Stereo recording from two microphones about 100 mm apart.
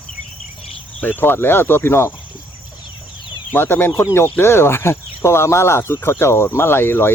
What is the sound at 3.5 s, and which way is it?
Speech, 20° left (ahead or behind).